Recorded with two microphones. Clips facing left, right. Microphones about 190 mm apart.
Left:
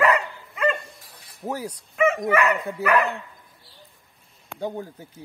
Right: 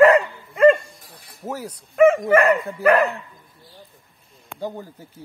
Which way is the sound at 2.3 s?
45° right (ahead or behind).